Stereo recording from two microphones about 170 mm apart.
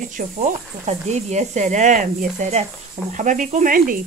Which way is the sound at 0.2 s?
50° right (ahead or behind).